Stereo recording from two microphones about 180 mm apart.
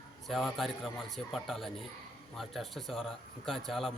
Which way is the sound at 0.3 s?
Centre (ahead or behind).